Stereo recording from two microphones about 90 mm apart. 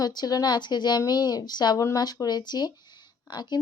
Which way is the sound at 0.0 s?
50° left (ahead or behind).